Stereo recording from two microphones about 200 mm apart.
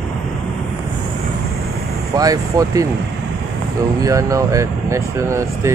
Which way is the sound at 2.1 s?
20° right (ahead or behind).